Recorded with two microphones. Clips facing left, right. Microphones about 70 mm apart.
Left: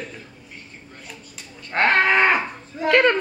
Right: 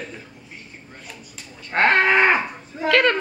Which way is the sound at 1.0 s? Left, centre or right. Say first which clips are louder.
Even; centre.